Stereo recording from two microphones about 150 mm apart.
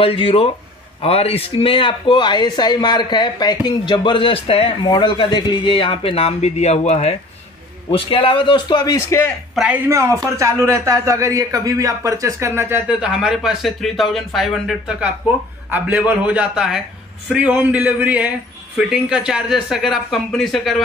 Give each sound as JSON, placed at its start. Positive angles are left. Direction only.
{"t": 0.0, "sound": "a man's voice", "side_deg": 40}
{"t": 9.8, "sound": "a man's voice", "side_deg": -20}